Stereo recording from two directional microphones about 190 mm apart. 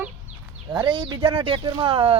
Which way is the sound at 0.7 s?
25° right (ahead or behind).